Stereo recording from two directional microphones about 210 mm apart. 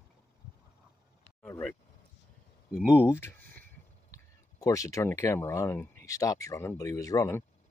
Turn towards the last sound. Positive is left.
turn(degrees=15)  # may be behind; listen again after turning